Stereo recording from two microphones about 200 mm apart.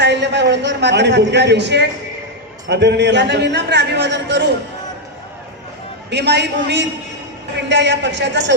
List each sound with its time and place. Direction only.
0.0 s a man's voice: 60° right (ahead or behind)
6.1 s a man's voice: 55° right (ahead or behind)